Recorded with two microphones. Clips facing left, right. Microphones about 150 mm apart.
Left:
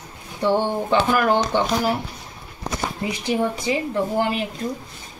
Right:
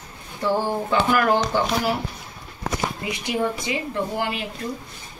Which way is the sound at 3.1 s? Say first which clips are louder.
Left 3 dB; 35° left (ahead or behind).